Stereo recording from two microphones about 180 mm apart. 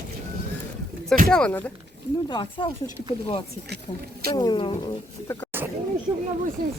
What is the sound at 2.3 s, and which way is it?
Speech, 25° left (ahead or behind).